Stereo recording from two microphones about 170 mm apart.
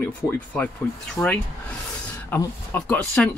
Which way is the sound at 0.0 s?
15° left (ahead or behind).